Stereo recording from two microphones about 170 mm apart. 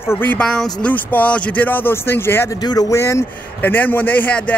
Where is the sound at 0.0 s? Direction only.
10° left (ahead or behind).